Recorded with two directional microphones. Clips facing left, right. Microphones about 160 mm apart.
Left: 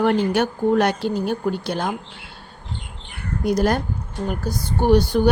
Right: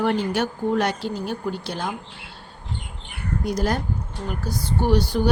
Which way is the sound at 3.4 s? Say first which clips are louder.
Left 5 dB; 60° left (ahead or behind).